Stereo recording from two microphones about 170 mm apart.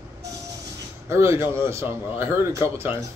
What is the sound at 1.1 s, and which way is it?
A man's voice, 15° right (ahead or behind).